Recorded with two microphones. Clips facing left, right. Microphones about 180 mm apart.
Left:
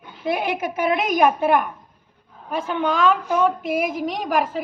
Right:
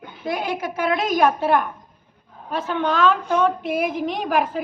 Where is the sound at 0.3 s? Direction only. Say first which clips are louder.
Left 2 dB; 25° left (ahead or behind).